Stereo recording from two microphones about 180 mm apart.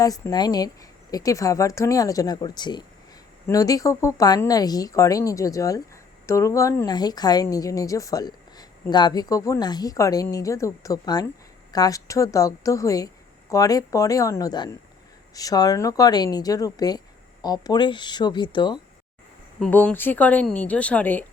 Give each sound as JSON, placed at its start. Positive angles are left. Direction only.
{"t": 0.0, "sound": "a woman's voice", "side_deg": 20}
{"t": 19.5, "sound": "speech", "side_deg": 5}